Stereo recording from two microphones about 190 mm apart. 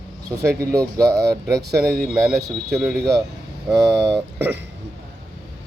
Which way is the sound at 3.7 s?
20° right (ahead or behind).